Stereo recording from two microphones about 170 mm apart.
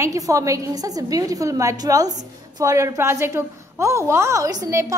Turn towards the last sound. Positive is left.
turn(degrees=-20)  # may be behind; listen again after turning